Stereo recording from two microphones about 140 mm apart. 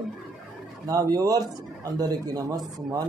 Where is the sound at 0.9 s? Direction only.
25° right (ahead or behind).